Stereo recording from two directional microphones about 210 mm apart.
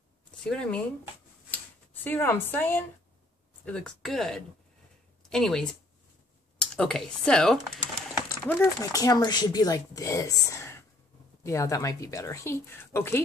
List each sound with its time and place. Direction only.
0.4 s speech: 5° left (ahead or behind)
2.0 s speech: 10° left (ahead or behind)
8.5 s speech: 15° left (ahead or behind)